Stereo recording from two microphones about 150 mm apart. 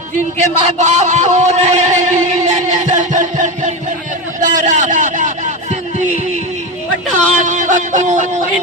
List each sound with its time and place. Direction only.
0.3 s speech: 50° right (ahead or behind)
4.4 s vehicle: 60° right (ahead or behind)
7.3 s a sound: 55° right (ahead or behind)